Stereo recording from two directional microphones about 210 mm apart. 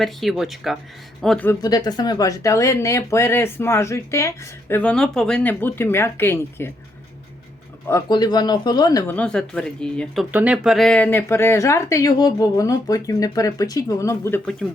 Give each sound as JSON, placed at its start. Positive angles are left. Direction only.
{"t": 0.0, "sound": "speech", "side_deg": 0}
{"t": 1.6, "sound": "speech", "side_deg": 20}
{"t": 7.9, "sound": "a man's voice", "side_deg": 15}
{"t": 9.1, "sound": "speech", "side_deg": 5}